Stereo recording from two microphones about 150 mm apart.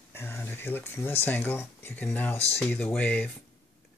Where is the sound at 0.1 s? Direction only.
15° left (ahead or behind).